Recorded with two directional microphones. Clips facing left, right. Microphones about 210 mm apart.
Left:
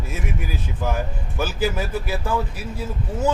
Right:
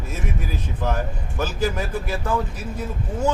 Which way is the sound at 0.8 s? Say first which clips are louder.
Even; 10° left (ahead or behind).